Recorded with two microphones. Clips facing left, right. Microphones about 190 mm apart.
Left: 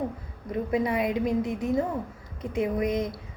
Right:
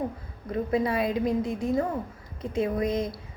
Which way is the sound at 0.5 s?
20° left (ahead or behind).